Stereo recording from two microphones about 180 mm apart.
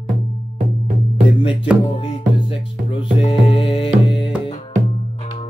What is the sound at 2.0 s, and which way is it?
Music, 30° left (ahead or behind).